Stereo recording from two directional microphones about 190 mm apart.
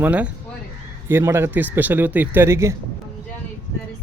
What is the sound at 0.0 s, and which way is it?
Speech, 5° right (ahead or behind).